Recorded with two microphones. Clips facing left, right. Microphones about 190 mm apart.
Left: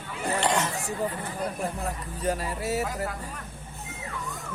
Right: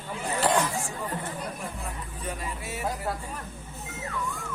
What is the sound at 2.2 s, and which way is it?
Speech, 40° left (ahead or behind).